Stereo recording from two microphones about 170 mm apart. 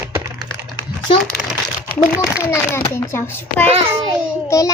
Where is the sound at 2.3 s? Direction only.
15° left (ahead or behind).